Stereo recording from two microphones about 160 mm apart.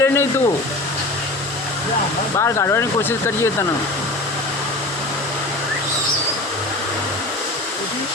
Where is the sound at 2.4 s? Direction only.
20° left (ahead or behind).